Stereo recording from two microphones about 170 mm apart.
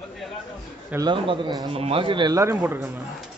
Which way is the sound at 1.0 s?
30° right (ahead or behind).